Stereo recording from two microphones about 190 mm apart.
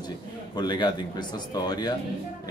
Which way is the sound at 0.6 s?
25° left (ahead or behind).